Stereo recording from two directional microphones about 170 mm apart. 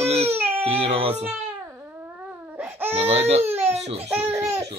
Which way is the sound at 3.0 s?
35° right (ahead or behind).